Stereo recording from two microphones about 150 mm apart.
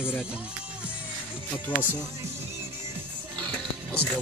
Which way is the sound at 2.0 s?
15° right (ahead or behind).